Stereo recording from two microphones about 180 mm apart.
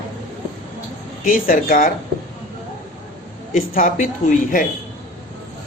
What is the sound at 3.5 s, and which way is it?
Speech, 50° left (ahead or behind).